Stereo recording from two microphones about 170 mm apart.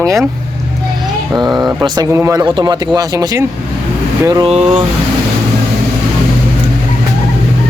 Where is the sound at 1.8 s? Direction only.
20° right (ahead or behind).